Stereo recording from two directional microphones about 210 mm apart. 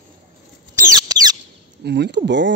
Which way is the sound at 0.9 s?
20° right (ahead or behind).